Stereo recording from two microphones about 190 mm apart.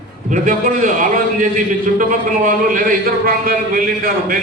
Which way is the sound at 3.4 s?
50° right (ahead or behind).